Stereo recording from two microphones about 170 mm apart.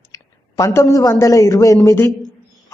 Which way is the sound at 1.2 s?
20° left (ahead or behind).